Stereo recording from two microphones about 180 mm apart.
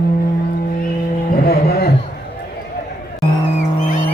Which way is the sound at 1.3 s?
55° left (ahead or behind).